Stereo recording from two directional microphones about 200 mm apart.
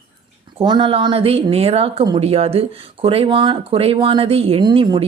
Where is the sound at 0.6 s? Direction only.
25° right (ahead or behind).